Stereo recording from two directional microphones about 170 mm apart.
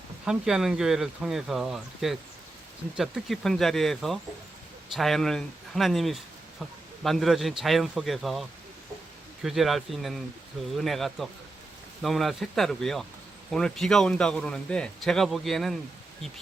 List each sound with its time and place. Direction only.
0.3 s speech: 5° right (ahead or behind)